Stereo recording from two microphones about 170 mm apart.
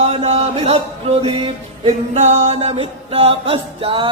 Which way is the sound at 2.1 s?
45° right (ahead or behind).